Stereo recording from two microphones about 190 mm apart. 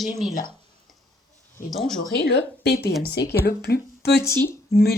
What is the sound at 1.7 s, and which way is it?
Speech, centre (ahead or behind).